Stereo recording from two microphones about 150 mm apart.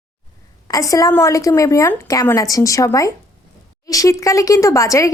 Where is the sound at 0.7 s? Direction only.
20° left (ahead or behind).